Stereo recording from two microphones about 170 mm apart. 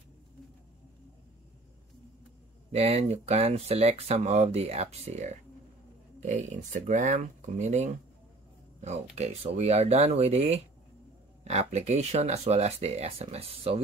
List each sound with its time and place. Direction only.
2.7 s speech: 35° right (ahead or behind)